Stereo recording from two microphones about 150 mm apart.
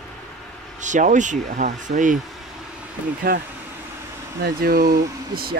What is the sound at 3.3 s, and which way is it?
Speech, 90° right.